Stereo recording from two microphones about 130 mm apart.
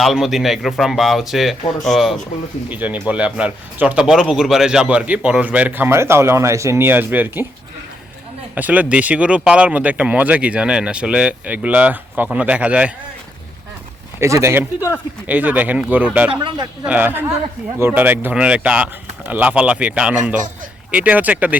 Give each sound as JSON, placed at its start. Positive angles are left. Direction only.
{"t": 0.0, "sound": "speech", "side_deg": 0}
{"t": 2.6, "sound": "speech", "side_deg": -10}
{"t": 8.5, "sound": "speech", "side_deg": -10}
{"t": 14.2, "sound": "speech", "side_deg": -20}
{"t": 16.3, "sound": "speech", "side_deg": -40}
{"t": 16.8, "sound": "speech", "side_deg": -15}